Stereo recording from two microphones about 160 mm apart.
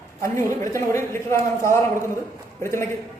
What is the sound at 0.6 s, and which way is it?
A man's voice, 20° left (ahead or behind).